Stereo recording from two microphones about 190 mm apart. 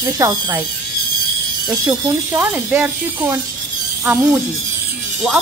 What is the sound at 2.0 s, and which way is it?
Speech, 10° right (ahead or behind).